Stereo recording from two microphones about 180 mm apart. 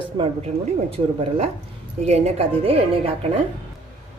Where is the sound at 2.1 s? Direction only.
35° right (ahead or behind).